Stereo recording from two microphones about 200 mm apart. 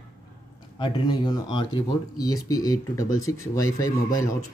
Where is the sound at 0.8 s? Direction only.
20° left (ahead or behind).